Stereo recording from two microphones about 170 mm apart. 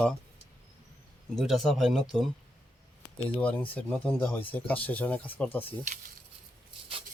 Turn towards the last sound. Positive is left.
turn(degrees=10)  # may be behind; listen again after turning